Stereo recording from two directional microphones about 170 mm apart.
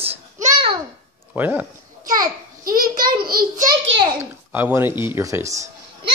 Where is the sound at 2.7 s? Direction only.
55° right (ahead or behind).